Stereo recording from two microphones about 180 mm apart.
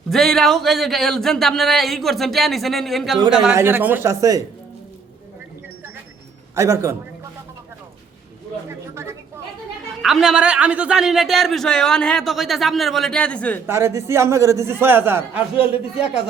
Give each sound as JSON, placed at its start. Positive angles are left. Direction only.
{"t": 0.1, "sound": "a man's voice", "side_deg": 0}
{"t": 3.5, "sound": "a man's voice", "side_deg": -15}
{"t": 6.6, "sound": "a man's voice", "side_deg": -15}
{"t": 10.0, "sound": "a man's voice", "side_deg": 0}
{"t": 13.7, "sound": "a man's voice", "side_deg": -15}